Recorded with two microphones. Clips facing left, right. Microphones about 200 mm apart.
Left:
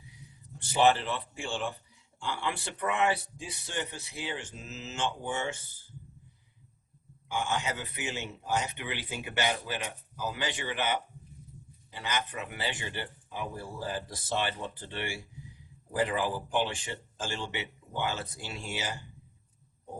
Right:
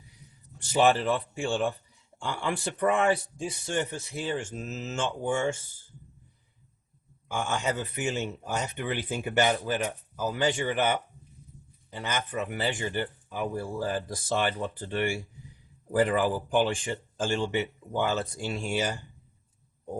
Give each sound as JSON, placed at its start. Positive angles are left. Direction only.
{"t": 0.7, "sound": "speech", "side_deg": -50}
{"t": 7.3, "sound": "speech", "side_deg": -45}
{"t": 11.9, "sound": "speech", "side_deg": -45}